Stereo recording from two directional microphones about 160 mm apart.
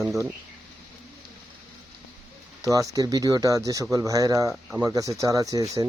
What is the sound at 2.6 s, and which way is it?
Speech, 20° right (ahead or behind).